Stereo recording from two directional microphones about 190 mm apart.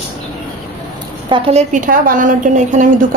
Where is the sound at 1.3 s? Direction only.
35° right (ahead or behind).